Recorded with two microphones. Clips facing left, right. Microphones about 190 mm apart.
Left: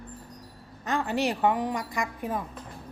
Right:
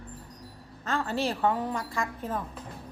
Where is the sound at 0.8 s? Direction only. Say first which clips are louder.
Left 2 dB; 15° left (ahead or behind).